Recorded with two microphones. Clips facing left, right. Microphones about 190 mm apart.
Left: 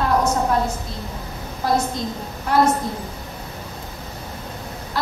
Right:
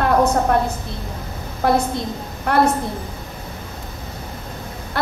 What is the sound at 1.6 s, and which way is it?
Speech, 60° right (ahead or behind).